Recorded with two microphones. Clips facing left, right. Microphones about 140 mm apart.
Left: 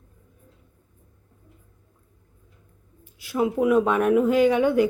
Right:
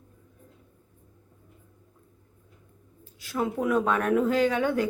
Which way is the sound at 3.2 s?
10° left (ahead or behind).